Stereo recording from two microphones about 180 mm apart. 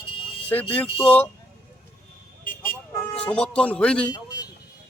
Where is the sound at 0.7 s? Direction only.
10° left (ahead or behind).